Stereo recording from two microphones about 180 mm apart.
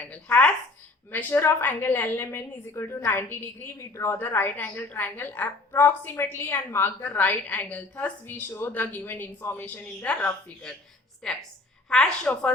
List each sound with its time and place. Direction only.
0.0 s a woman's voice: 10° left (ahead or behind)